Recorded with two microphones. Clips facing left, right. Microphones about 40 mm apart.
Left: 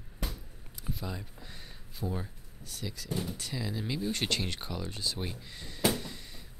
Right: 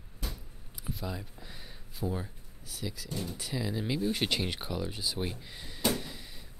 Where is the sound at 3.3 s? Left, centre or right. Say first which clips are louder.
Right 2 dB; centre.